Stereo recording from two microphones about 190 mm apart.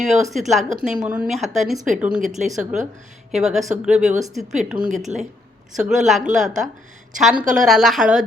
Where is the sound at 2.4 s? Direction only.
40° right (ahead or behind).